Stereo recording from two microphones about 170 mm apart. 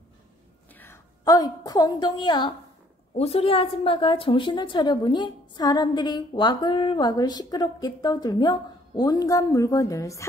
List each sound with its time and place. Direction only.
1.2 s a woman's voice: 20° left (ahead or behind)
3.2 s a woman's voice: 35° left (ahead or behind); by 10.2 s 20° left (ahead or behind)